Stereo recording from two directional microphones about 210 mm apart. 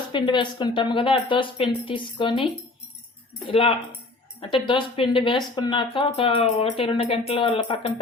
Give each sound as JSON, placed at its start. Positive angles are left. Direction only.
{"t": 0.1, "sound": "speech", "side_deg": 20}